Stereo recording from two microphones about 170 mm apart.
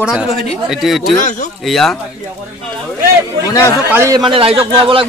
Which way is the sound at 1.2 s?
50° left (ahead or behind).